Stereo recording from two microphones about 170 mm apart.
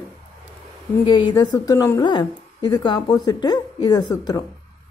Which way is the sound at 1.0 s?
25° left (ahead or behind).